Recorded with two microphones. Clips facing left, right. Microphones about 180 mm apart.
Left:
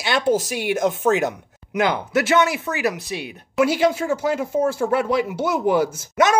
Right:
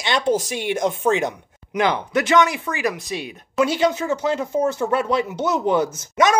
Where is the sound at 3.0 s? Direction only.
60° left (ahead or behind).